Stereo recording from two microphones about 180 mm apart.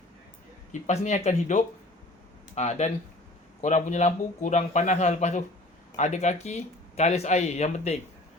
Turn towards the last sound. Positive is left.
turn(degrees=40)  # may be behind; listen again after turning